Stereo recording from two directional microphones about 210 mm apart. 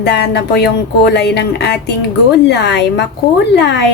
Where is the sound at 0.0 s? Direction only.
55° left (ahead or behind).